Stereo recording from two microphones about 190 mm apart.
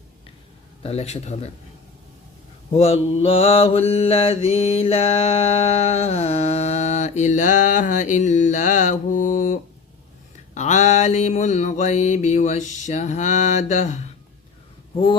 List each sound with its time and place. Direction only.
0.8 s mantra: 35° left (ahead or behind)
2.7 s mantra: 30° left (ahead or behind)